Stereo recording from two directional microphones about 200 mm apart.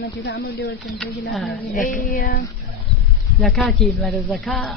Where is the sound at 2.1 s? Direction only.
45° left (ahead or behind).